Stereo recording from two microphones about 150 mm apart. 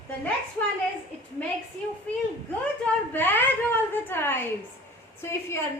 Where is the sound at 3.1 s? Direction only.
15° left (ahead or behind).